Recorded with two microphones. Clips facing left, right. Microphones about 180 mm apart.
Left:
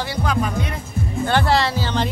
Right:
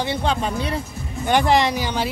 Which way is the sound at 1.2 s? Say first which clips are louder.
Right 2 dB; 15° right (ahead or behind).